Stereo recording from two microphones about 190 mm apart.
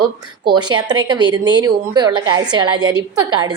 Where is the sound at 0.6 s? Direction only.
25° right (ahead or behind).